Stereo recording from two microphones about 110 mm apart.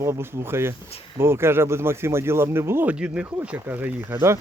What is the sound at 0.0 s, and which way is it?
Speech, 25° right (ahead or behind).